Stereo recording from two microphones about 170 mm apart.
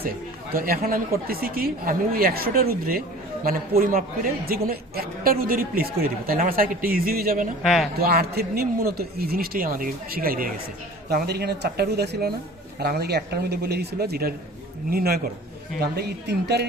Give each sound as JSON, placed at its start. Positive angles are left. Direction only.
{"t": 0.5, "sound": "a man's voice", "side_deg": -60}
{"t": 7.6, "sound": "speech", "side_deg": 0}
{"t": 7.9, "sound": "a man's voice", "side_deg": -65}